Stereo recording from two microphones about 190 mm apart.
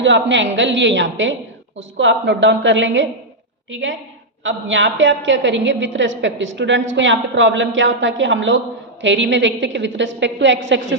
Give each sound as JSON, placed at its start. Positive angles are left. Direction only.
{"t": 0.0, "sound": "a woman's voice", "side_deg": -70}